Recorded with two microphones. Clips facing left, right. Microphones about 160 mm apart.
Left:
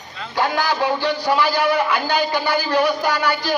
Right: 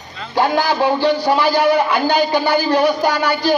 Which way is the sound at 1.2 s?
30° right (ahead or behind).